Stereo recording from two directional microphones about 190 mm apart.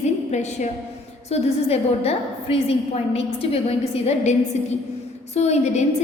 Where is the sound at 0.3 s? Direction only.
40° left (ahead or behind).